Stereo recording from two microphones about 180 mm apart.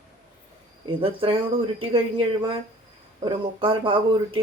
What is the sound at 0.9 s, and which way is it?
A woman's voice, 30° right (ahead or behind).